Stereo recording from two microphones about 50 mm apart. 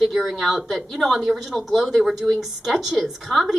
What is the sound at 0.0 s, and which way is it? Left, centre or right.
A woman's voice, centre.